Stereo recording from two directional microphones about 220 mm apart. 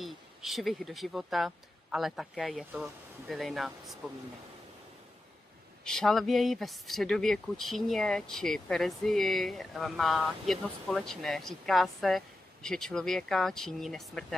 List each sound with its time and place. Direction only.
0.0 s speech: centre (ahead or behind)
5.9 s speech: centre (ahead or behind)